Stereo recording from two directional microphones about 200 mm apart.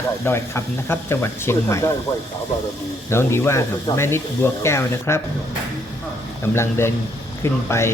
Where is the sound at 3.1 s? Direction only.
15° left (ahead or behind).